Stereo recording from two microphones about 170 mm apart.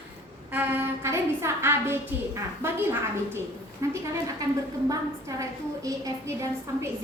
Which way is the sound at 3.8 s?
20° right (ahead or behind).